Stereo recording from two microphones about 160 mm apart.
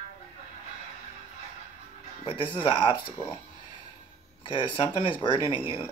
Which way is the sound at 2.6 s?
30° left (ahead or behind).